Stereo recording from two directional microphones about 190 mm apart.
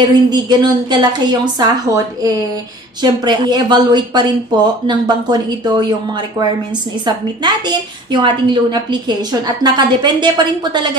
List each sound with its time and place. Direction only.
0.0 s a woman's voice: 20° right (ahead or behind)